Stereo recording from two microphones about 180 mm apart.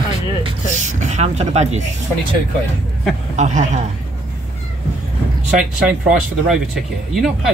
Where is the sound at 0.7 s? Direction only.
45° right (ahead or behind).